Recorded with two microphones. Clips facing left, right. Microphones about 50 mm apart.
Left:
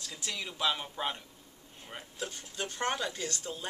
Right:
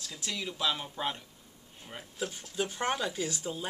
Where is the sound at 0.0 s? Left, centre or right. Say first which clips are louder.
Right 2 dB; centre.